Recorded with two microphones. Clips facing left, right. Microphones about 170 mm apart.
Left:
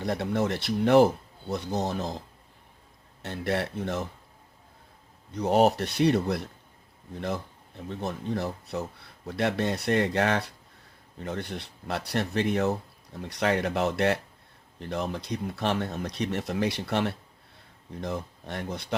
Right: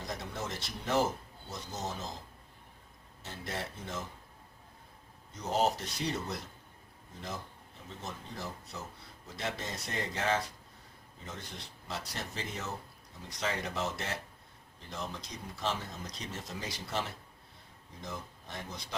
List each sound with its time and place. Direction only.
0.0 s speech: 65° left (ahead or behind)
3.2 s speech: 65° left (ahead or behind)
5.3 s speech: 65° left (ahead or behind)
7.9 s speech: 65° left (ahead or behind)